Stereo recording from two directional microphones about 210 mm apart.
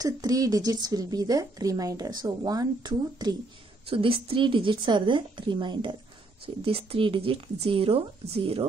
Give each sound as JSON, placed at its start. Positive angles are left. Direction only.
{"t": 0.0, "sound": "a woman's voice", "side_deg": -15}